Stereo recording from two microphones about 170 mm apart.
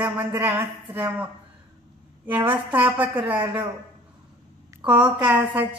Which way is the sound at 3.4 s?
30° right (ahead or behind).